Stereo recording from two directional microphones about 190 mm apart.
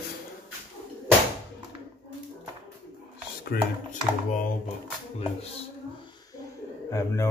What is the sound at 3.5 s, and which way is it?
Speech, 55° left (ahead or behind).